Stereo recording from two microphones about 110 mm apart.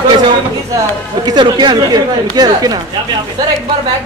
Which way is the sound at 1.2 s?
40° right (ahead or behind).